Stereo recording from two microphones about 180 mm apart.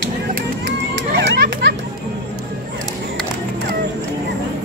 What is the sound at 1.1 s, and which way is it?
Children playing, 90° right.